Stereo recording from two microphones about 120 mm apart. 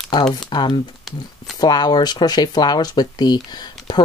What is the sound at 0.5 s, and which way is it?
Speech, 40° left (ahead or behind).